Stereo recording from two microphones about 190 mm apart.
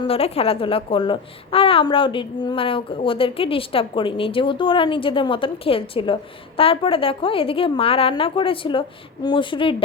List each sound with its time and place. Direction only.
0.0 s a child's voice: 30° left (ahead or behind)